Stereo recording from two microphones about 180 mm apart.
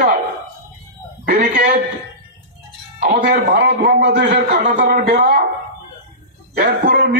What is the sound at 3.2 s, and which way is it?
A man's voice, 65° right (ahead or behind).